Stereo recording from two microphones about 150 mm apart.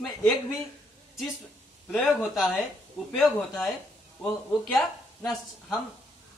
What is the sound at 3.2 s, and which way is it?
Speech, centre (ahead or behind).